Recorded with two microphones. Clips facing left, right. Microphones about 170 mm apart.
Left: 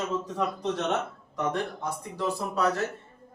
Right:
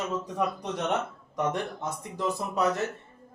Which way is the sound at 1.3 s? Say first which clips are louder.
Even; 20° right (ahead or behind).